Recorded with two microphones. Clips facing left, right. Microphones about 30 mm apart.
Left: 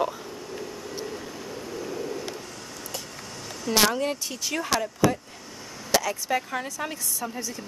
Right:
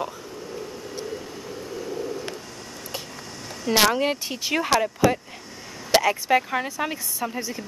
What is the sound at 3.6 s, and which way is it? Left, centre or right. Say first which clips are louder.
A woman's voice: right 3 dB; right.